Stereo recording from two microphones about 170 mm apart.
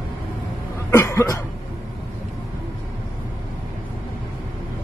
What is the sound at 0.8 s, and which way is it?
Cough, 15° left (ahead or behind).